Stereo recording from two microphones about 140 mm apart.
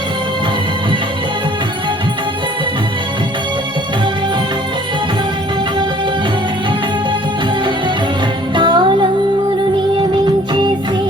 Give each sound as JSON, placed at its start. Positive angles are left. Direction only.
{"t": 8.5, "sound": "music", "side_deg": -35}